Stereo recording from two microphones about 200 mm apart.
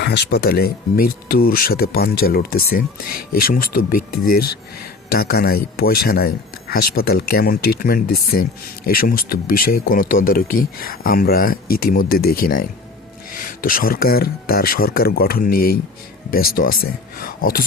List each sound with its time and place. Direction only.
0.0 s speech: 55° left (ahead or behind)